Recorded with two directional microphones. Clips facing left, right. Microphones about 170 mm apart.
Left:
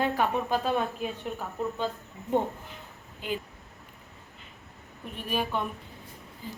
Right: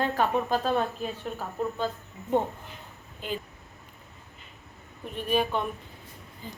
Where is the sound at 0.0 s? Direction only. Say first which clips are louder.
Right 1 dB; 10° left (ahead or behind).